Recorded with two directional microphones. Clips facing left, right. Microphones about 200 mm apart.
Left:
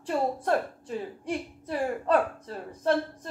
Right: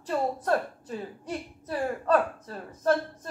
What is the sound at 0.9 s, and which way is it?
A woman's voice, 10° left (ahead or behind).